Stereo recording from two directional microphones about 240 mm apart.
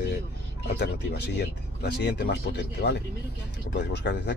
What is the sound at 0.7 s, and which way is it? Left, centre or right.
Speech, left.